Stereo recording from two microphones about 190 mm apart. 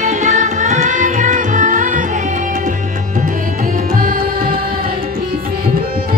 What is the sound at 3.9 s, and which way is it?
Music, 50° right (ahead or behind).